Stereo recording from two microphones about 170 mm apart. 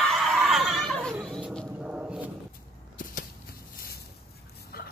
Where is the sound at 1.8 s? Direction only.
5° right (ahead or behind).